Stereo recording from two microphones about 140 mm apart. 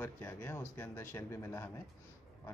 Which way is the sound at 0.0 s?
15° left (ahead or behind).